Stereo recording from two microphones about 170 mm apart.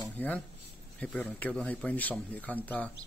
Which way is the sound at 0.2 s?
10° left (ahead or behind).